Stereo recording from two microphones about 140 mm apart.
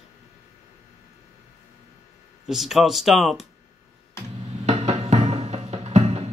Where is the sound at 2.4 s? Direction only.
Centre (ahead or behind).